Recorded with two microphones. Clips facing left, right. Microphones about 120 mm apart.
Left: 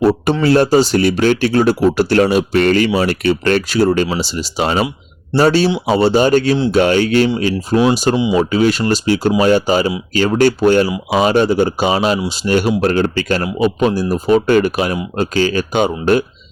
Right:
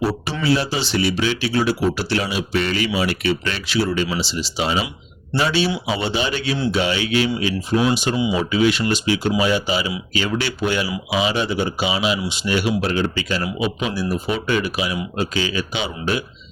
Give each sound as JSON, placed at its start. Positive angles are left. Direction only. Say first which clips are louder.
{"t": 0.0, "sound": "speech", "louder": "left 9 dB", "side_deg": 50}